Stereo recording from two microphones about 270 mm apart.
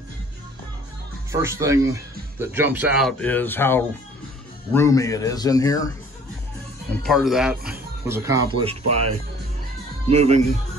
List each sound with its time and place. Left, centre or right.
1.3 s speech: centre
6.9 s speech: centre; by 9.0 s right
10.0 s speech: right